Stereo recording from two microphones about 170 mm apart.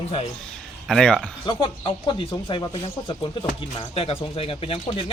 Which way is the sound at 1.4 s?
30° left (ahead or behind).